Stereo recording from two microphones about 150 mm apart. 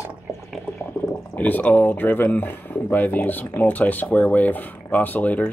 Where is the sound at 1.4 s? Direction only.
10° left (ahead or behind).